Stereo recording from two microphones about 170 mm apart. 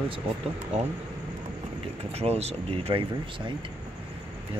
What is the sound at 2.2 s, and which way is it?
Speech, 40° right (ahead or behind).